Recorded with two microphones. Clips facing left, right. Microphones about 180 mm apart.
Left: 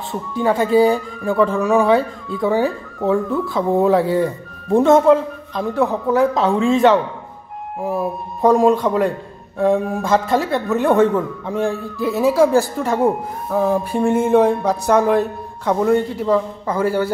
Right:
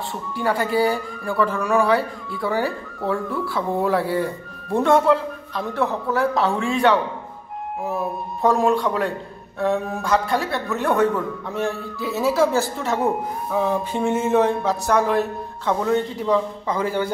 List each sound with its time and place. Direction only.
0.3 s speech: 20° left (ahead or behind)